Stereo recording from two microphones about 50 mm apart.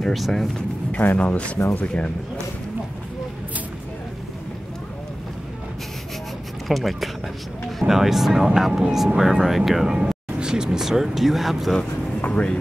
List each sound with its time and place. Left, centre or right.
0.1 s speech: centre
1.1 s speech: left
6.7 s speech: centre
12.2 s speech: left